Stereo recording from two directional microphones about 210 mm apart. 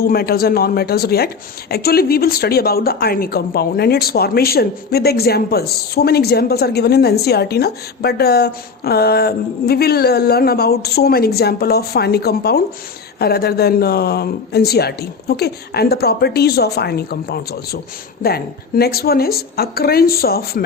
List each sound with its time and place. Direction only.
0.0 s speech: 45° left (ahead or behind)